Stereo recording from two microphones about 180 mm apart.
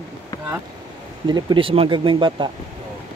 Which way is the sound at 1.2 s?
25° right (ahead or behind).